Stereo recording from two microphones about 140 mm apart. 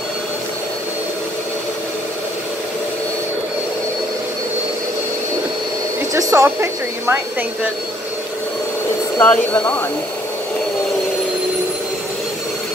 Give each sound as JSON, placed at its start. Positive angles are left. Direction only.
{"t": 6.1, "sound": "a woman's voice", "side_deg": -20}
{"t": 9.2, "sound": "speech", "side_deg": 15}